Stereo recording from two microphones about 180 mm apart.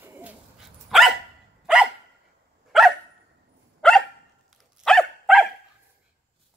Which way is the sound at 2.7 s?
Centre (ahead or behind).